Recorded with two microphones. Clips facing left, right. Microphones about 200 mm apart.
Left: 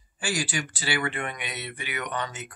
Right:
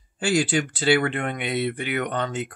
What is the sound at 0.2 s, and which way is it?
Speech, 60° right (ahead or behind).